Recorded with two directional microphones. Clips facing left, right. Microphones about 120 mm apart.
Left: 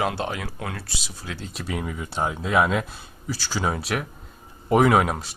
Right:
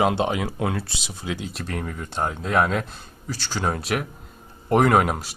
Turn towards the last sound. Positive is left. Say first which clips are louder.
# even
turn(degrees=0)  # may be behind; listen again after turning